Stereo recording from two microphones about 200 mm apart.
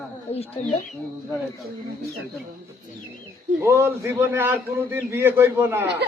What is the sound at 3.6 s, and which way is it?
A man's voice, 10° right (ahead or behind).